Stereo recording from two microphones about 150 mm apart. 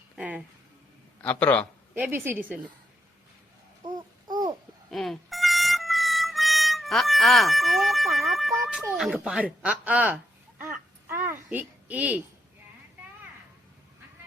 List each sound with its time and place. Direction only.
0.2 s a sound: 10° right (ahead or behind)
1.2 s a man's voice: 10° left (ahead or behind)
2.0 s speech: 15° right (ahead or behind)
3.8 s babbling: 25° right (ahead or behind)
4.9 s music: centre (ahead or behind)
9.0 s speech: 5° right (ahead or behind)
11.1 s a sound: 15° right (ahead or behind)
11.4 s a woman's voice: 10° right (ahead or behind)